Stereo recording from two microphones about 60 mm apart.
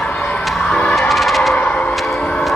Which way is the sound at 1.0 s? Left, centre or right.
Centre.